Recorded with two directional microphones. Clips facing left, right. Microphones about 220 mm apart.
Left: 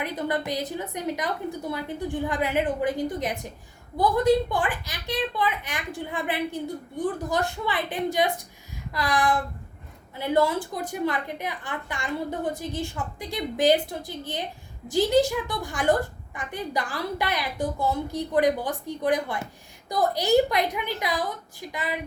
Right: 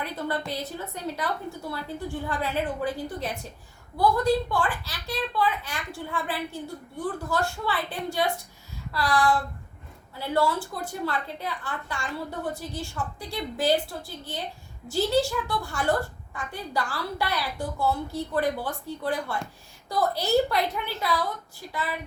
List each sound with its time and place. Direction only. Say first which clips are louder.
0.0 s a woman's voice: left 3 dB; 15° left (ahead or behind)